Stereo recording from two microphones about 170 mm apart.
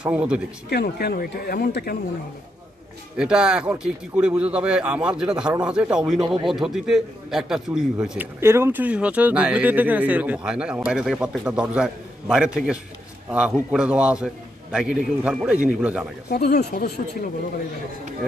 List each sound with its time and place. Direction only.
0.0 s speech: 5° right (ahead or behind)
0.7 s speech: 70° left (ahead or behind)
3.2 s speech: 5° right (ahead or behind)
8.4 s speech: 15° right (ahead or behind)
16.3 s speech: 75° left (ahead or behind)